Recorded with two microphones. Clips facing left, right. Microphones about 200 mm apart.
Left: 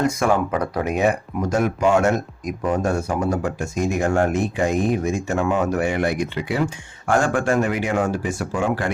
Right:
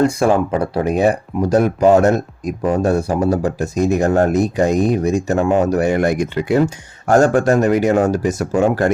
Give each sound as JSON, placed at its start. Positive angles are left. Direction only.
{"t": 0.0, "sound": "speech", "side_deg": -30}